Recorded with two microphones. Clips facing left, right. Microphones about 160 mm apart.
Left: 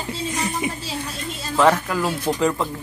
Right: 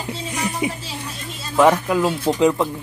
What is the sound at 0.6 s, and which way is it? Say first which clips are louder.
Speech: right 1 dB; 15° right (ahead or behind).